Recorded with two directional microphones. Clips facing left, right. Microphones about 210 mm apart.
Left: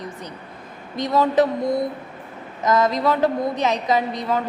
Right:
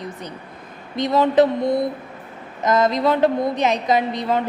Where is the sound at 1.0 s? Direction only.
25° right (ahead or behind).